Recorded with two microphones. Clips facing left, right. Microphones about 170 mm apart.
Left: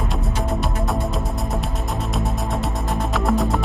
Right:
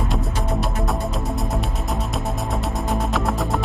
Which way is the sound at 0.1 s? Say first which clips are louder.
Even; centre (ahead or behind).